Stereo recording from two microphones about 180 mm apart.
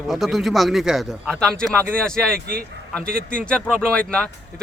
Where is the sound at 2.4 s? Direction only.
55° right (ahead or behind).